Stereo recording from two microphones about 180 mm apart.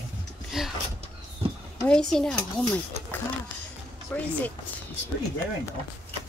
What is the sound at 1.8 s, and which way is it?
Speech, 5° left (ahead or behind).